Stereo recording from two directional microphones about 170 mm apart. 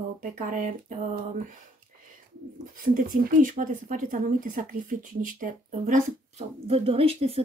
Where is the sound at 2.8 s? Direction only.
55° right (ahead or behind).